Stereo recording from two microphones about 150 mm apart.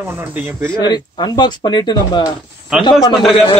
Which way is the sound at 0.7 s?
30° left (ahead or behind).